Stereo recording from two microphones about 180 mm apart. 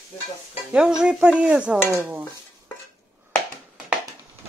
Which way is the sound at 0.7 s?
5° right (ahead or behind).